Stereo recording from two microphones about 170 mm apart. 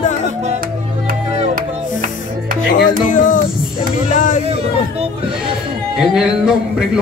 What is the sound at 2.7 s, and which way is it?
Music, 50° left (ahead or behind).